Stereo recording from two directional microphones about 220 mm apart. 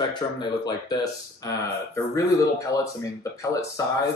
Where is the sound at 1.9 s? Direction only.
15° left (ahead or behind).